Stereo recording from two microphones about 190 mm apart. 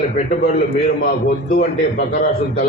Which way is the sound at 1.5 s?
50° left (ahead or behind).